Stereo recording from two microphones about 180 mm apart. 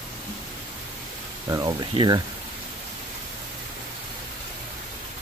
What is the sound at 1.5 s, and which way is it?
Speech, 20° right (ahead or behind).